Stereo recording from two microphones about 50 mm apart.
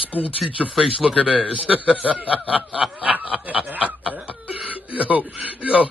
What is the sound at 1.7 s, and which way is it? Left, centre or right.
Speech, right.